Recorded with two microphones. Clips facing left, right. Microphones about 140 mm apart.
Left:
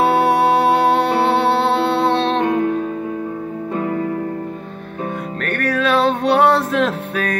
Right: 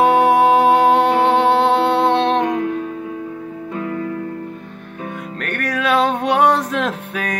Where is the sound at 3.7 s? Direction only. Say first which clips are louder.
Left 3 dB; 40° left (ahead or behind).